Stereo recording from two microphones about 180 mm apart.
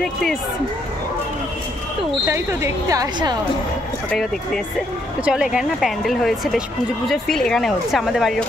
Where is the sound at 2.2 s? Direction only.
15° right (ahead or behind).